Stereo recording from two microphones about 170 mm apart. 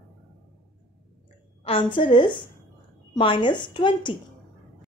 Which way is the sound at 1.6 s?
30° left (ahead or behind).